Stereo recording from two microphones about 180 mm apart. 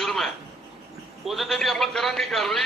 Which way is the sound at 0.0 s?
Centre (ahead or behind).